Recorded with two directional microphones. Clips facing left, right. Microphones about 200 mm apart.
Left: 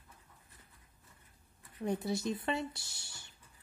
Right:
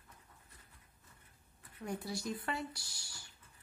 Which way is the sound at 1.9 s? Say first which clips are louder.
Left 6 dB; 25° left (ahead or behind).